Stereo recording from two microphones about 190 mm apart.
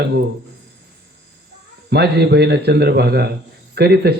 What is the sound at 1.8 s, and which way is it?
A man's voice, 60° right (ahead or behind).